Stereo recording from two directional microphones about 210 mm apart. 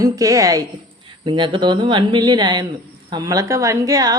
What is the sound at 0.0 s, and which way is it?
A woman's voice, 15° right (ahead or behind).